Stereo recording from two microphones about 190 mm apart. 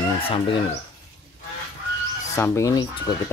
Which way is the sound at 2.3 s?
15° left (ahead or behind).